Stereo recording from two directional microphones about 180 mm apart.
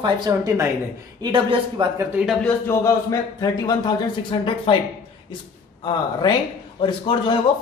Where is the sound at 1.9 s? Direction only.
5° right (ahead or behind).